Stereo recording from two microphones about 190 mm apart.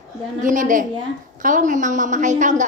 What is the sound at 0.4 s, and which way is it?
A woman's voice, 45° right (ahead or behind).